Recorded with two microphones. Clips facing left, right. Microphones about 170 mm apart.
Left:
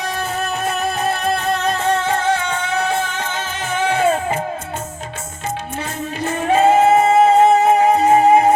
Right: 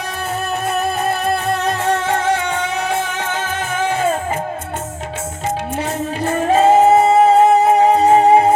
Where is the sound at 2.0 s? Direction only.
80° right.